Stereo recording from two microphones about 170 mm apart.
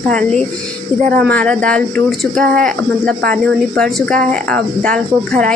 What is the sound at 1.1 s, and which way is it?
A woman's voice, 5° left (ahead or behind).